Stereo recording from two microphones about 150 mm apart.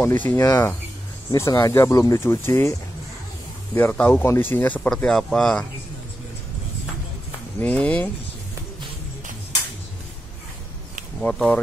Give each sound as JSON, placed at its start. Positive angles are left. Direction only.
{"t": 0.0, "sound": "speech", "side_deg": 15}
{"t": 3.7, "sound": "speech", "side_deg": 10}
{"t": 7.6, "sound": "speech", "side_deg": 10}
{"t": 11.1, "sound": "speech", "side_deg": 5}